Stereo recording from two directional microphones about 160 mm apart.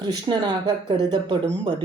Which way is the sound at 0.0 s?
30° right (ahead or behind).